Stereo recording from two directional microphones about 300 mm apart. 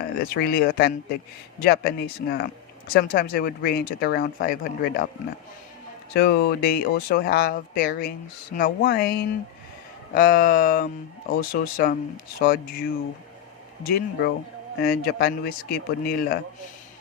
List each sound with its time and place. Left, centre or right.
0.0 s speech: left
2.9 s speech: left
6.1 s speech: left
10.2 s speech: left
13.8 s speech: left